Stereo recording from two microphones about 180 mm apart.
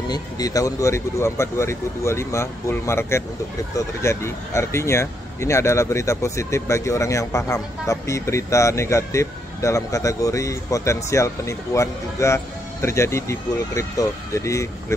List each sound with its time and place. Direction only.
0.1 s speech: 20° left (ahead or behind)